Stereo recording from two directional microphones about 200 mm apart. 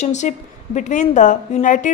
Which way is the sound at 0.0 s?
35° left (ahead or behind).